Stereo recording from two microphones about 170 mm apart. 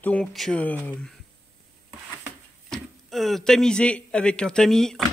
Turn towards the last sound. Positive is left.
turn(degrees=0)  # may be behind; listen again after turning